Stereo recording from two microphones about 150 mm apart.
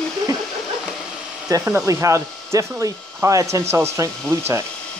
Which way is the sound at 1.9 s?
20° right (ahead or behind).